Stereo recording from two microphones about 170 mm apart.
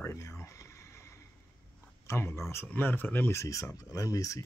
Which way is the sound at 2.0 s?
15° left (ahead or behind).